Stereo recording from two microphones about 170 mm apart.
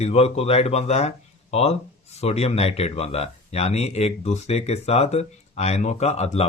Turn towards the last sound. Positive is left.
turn(degrees=40)  # may be behind; listen again after turning